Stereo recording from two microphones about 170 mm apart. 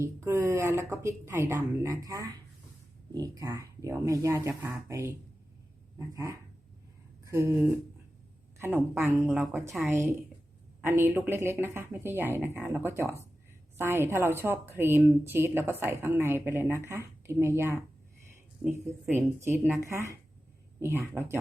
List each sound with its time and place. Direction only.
0.0 s a woman's voice: 15° right (ahead or behind)
7.3 s a sound: 15° right (ahead or behind)
8.5 s a woman's voice: 15° right (ahead or behind)